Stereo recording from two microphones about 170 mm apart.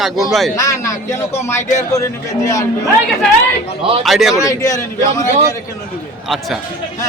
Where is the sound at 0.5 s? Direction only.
20° left (ahead or behind).